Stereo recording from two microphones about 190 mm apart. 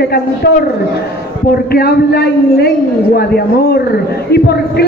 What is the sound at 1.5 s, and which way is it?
A man's voice, 55° left (ahead or behind).